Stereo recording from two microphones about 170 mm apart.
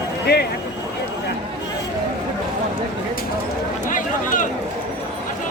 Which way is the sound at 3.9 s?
50° left (ahead or behind).